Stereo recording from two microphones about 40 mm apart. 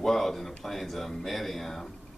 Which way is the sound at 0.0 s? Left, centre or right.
Centre.